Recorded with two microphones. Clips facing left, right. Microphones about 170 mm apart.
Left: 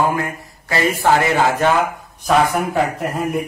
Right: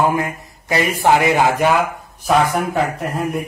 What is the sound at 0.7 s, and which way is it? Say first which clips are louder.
A man's voice: right 1 dB; 15° right (ahead or behind).